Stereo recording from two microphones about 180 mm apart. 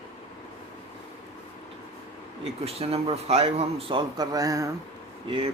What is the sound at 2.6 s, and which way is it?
A man's voice, 35° right (ahead or behind).